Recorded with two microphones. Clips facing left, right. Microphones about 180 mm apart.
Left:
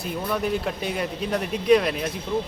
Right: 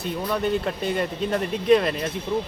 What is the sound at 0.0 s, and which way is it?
Speech, centre (ahead or behind).